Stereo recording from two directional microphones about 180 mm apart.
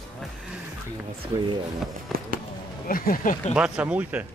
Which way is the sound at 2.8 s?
50° left (ahead or behind).